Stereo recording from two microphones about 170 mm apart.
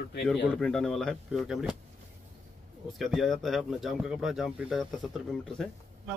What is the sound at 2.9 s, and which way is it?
Speech, centre (ahead or behind).